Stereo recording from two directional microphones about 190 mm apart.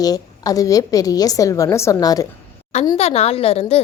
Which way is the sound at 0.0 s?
20° left (ahead or behind).